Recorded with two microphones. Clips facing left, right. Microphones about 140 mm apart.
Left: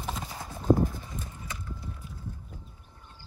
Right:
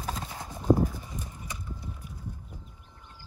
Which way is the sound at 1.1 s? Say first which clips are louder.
Even; 15° right (ahead or behind).